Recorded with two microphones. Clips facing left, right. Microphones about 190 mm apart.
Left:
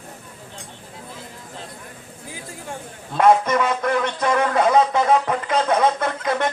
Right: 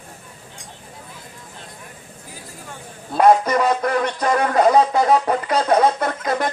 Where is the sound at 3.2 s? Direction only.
35° right (ahead or behind).